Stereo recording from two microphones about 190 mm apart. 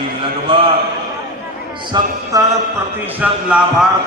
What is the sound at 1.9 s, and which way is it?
Speech, 20° right (ahead or behind).